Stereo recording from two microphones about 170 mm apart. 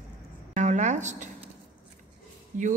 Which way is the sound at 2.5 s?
50° right (ahead or behind).